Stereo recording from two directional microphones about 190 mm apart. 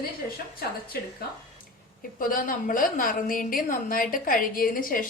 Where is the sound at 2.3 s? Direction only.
45° left (ahead or behind).